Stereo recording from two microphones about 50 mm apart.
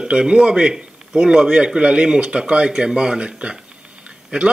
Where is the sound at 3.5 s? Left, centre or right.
Centre.